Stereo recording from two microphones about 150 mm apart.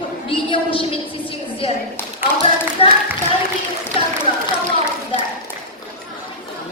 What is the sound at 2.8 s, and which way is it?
Clapping, 40° left (ahead or behind).